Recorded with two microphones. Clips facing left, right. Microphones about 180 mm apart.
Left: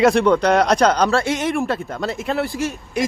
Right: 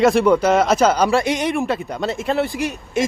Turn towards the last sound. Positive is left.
turn(degrees=-20)  # may be behind; listen again after turning